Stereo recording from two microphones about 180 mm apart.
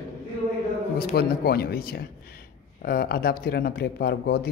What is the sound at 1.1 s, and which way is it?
Speech, 60° left (ahead or behind).